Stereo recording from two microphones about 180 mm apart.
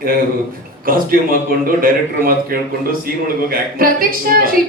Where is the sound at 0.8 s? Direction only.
55° right (ahead or behind).